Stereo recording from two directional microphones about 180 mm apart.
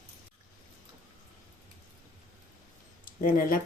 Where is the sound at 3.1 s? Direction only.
50° left (ahead or behind).